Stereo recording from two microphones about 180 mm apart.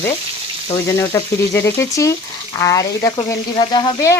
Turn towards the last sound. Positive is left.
turn(degrees=20)  # may be behind; listen again after turning